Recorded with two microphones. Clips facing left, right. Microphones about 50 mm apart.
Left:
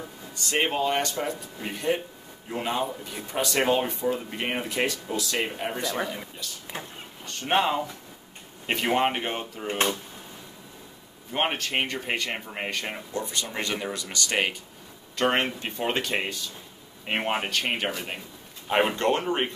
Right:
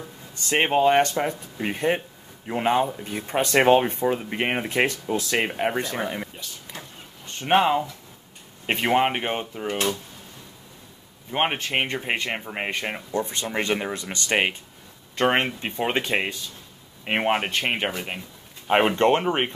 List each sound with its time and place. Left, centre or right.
0.5 s speech: right
6.7 s vehicle: left
7.2 s speech: right
11.3 s speech: right